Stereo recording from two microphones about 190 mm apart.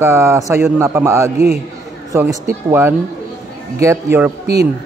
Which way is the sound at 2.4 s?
10° right (ahead or behind).